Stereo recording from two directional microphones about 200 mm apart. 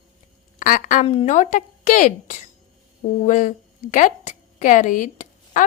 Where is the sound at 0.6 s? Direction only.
40° left (ahead or behind).